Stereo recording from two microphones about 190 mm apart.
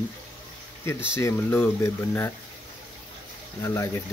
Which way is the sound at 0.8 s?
15° left (ahead or behind).